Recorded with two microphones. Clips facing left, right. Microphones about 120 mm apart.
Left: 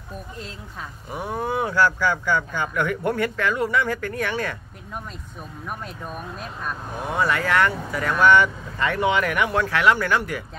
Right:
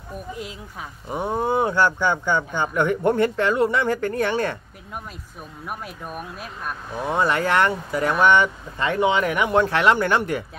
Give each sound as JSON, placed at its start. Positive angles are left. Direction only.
{"t": 1.1, "sound": "speech", "side_deg": -25}
{"t": 5.7, "sound": "speech", "side_deg": -10}
{"t": 7.1, "sound": "speech", "side_deg": -25}